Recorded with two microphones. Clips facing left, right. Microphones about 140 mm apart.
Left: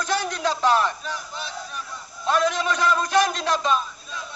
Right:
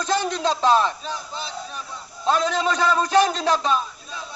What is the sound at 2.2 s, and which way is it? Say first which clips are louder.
A man's voice: right 1 dB; 30° right (ahead or behind).